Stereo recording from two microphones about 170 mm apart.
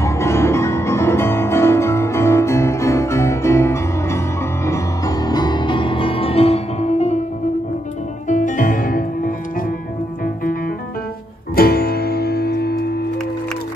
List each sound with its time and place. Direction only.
0.0 s music: 15° left (ahead or behind); by 7.2 s 40° left (ahead or behind)
8.3 s music: 50° left (ahead or behind); by 13.0 s 65° left (ahead or behind)